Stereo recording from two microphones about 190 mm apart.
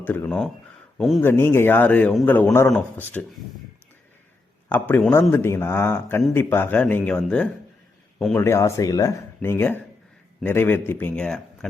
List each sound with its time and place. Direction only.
0.0 s a man's voice: 10° left (ahead or behind)
1.2 s a man's voice: 10° left (ahead or behind)
4.7 s a man's voice: 10° left (ahead or behind)
8.4 s a man's voice: 15° left (ahead or behind)